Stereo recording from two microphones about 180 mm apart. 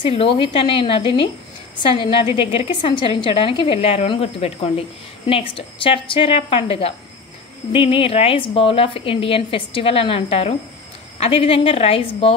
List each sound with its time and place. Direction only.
0.0 s a woman's voice: 30° left (ahead or behind)